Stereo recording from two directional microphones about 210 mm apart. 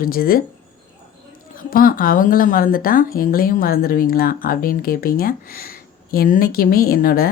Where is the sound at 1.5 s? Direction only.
40° left (ahead or behind).